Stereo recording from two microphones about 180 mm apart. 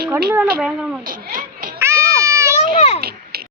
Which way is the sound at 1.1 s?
50° right (ahead or behind).